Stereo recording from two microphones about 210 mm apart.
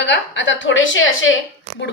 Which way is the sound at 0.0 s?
60° left (ahead or behind).